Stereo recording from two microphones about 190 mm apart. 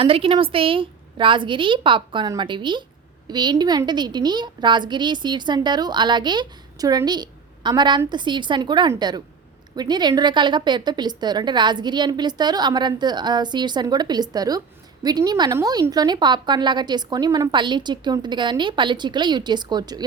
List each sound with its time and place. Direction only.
0.0 s a woman's voice: 30° right (ahead or behind)